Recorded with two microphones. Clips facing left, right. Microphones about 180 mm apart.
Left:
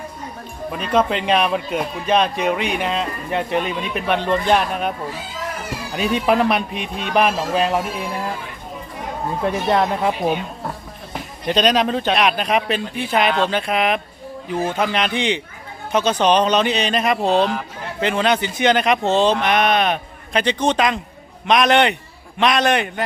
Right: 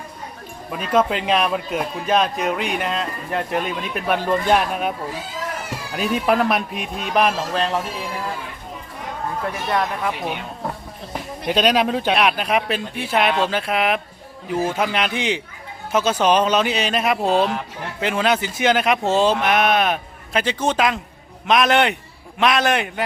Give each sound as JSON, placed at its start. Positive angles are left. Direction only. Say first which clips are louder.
{"t": 0.7, "sound": "speech", "louder": "even", "side_deg": -5}
{"t": 9.4, "sound": "speech", "louder": "left 5 dB", "side_deg": 25}
{"t": 11.4, "sound": "speech", "louder": "left 1 dB", "side_deg": -5}